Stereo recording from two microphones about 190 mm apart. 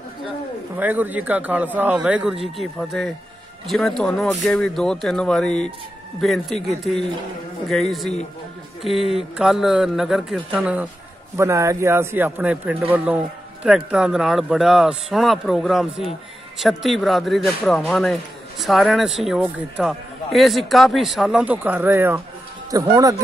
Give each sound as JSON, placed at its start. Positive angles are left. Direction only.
{"t": 0.7, "sound": "a man's voice", "side_deg": -10}